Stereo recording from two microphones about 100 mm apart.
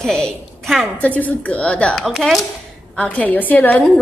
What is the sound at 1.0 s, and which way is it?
Speech, 15° left (ahead or behind).